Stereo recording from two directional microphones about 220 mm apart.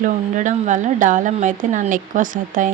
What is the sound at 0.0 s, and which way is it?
Speech, 35° right (ahead or behind).